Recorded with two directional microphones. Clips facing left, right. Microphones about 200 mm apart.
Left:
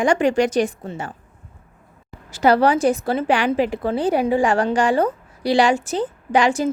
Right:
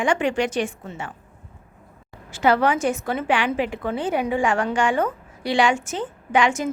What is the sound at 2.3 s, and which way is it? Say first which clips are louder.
A woman's voice: left 3 dB; 40° left (ahead or behind).